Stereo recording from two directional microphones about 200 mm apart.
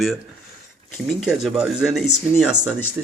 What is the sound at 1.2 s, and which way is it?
Speech, 5° right (ahead or behind).